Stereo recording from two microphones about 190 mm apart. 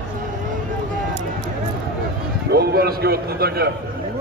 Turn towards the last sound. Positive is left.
turn(degrees=-55)  # may be behind; listen again after turning